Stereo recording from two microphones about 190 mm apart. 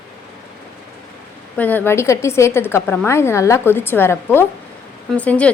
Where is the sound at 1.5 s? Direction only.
10° left (ahead or behind).